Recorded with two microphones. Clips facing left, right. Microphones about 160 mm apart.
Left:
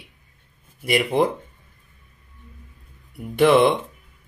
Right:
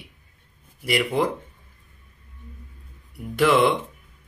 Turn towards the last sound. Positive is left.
turn(degrees=20)  # may be behind; listen again after turning